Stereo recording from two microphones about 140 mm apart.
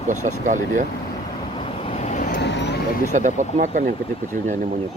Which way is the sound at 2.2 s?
90° left.